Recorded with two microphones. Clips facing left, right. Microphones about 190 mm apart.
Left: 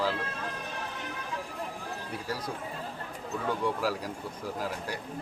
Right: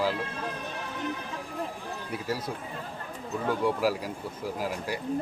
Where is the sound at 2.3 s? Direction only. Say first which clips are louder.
Right 4 dB; 5° right (ahead or behind).